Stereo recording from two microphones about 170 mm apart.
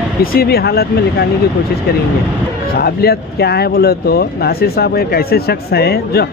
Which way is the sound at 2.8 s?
65° left (ahead or behind).